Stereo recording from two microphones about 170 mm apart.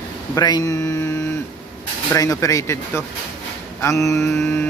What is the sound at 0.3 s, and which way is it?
A man's voice, 25° left (ahead or behind).